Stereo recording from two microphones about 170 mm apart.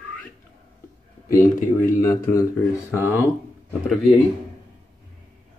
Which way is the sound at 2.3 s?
15° left (ahead or behind).